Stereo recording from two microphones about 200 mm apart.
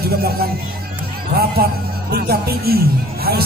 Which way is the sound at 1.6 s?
50° right (ahead or behind).